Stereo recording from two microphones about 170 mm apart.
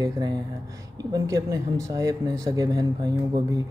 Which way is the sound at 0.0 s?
20° right (ahead or behind).